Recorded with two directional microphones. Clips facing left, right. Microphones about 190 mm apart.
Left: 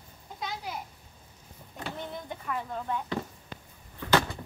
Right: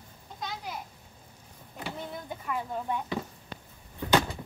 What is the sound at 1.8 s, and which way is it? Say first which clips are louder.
Speech: even; 5° right (ahead or behind).